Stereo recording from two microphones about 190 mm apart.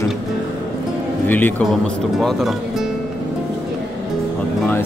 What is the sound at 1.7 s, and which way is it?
Speech, centre (ahead or behind).